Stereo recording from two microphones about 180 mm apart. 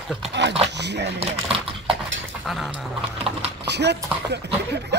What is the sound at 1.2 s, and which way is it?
Typing, 30° right (ahead or behind).